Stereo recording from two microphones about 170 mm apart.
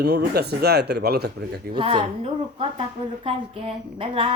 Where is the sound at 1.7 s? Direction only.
30° right (ahead or behind).